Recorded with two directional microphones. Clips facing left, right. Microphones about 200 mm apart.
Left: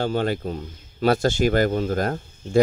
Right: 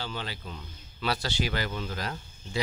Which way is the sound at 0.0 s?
50° left (ahead or behind).